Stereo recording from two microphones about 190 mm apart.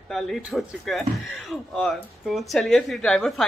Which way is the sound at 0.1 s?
Centre (ahead or behind).